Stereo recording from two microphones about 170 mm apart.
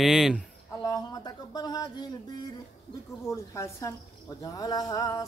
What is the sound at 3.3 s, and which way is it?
Speech, 15° left (ahead or behind).